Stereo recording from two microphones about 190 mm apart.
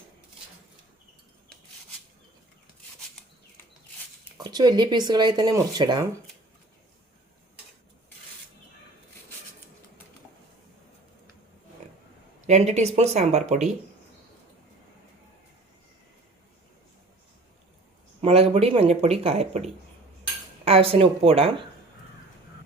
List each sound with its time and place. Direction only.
4.4 s speech: 20° right (ahead or behind)
12.5 s speech: 35° right (ahead or behind)
18.2 s speech: 30° right (ahead or behind)
20.7 s speech: 30° right (ahead or behind)